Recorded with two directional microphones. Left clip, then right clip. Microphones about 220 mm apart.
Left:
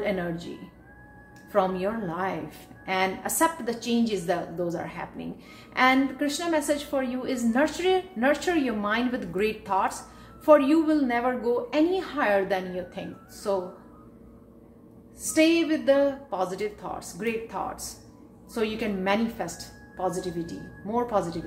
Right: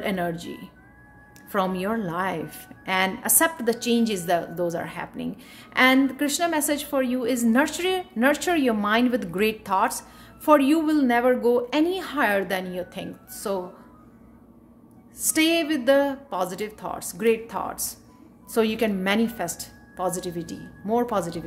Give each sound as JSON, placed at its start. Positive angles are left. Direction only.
{"t": 0.0, "sound": "speech", "side_deg": -50}
{"t": 1.5, "sound": "a woman's voice", "side_deg": -50}
{"t": 15.3, "sound": "a woman's voice", "side_deg": -50}